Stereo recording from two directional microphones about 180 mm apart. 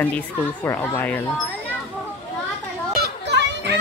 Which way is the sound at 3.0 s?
70° right (ahead or behind).